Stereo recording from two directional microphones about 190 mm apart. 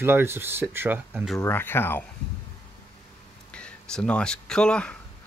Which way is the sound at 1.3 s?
10° left (ahead or behind).